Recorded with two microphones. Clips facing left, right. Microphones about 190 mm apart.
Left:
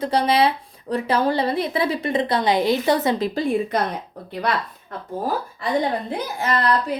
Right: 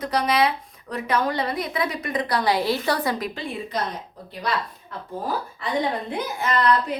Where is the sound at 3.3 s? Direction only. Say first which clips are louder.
Left 9 dB; 45° left (ahead or behind).